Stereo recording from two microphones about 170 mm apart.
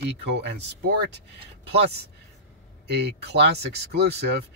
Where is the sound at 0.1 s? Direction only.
80° right.